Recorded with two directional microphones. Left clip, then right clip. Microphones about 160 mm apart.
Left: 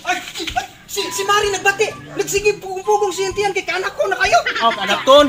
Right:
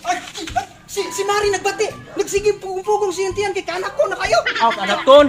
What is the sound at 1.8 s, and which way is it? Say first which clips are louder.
Speech: left 1 dB; 35° right (ahead or behind).